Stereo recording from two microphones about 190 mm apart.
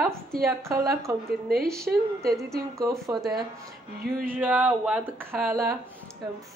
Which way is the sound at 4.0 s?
50° right (ahead or behind).